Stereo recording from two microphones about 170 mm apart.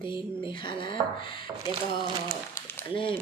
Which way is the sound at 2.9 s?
30° left (ahead or behind).